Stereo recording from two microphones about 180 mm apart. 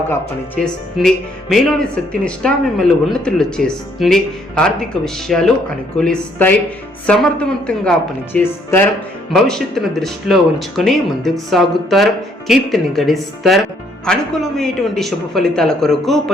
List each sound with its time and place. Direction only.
0.1 s speech: 5° left (ahead or behind)